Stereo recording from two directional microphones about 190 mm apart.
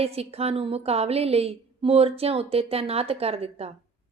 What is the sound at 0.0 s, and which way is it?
A woman's voice, 30° right (ahead or behind).